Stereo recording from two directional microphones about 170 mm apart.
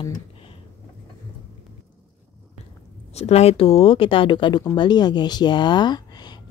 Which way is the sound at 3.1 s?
40° left (ahead or behind).